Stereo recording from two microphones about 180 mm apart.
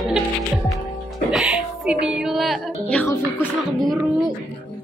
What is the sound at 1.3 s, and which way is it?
Music, 5° right (ahead or behind).